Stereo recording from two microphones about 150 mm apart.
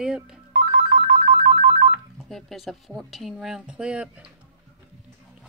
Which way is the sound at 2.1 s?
Centre (ahead or behind).